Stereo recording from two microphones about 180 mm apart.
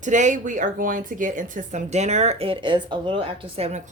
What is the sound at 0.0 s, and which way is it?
Speech, 45° right (ahead or behind).